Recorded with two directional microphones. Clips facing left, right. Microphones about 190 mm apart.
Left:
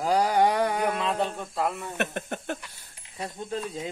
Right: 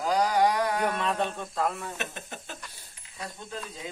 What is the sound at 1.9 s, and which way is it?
Speech, 60° left (ahead or behind).